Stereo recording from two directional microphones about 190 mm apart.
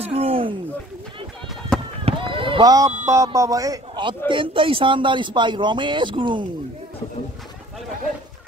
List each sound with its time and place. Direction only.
0.0 s a sound: 30° right (ahead or behind)
1.7 s run: 5° left (ahead or behind)
2.0 s speech: 25° right (ahead or behind)